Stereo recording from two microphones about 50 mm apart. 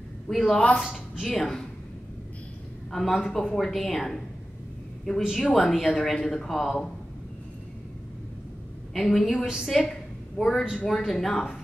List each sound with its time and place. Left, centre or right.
0.3 s a woman's voice: centre
0.6 s speech: left
1.2 s speech: centre
2.9 s speech: centre
5.4 s speech: centre
8.9 s speech: centre
9.8 s a sound: centre
10.9 s speech: centre